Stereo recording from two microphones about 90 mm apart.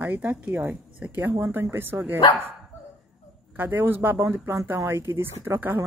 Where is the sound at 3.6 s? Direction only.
20° right (ahead or behind).